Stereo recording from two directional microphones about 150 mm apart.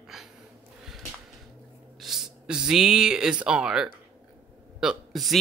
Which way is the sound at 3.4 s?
5° right (ahead or behind).